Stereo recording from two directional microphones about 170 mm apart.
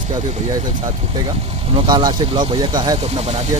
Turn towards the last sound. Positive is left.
turn(degrees=-40)  # may be behind; listen again after turning